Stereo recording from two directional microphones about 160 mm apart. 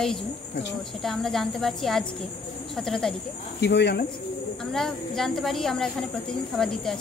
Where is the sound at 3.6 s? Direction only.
90° left.